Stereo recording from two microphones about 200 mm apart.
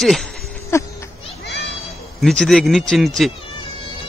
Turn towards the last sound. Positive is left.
turn(degrees=0)  # may be behind; listen again after turning